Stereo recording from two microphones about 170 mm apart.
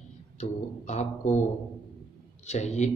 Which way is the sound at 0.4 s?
40° left (ahead or behind).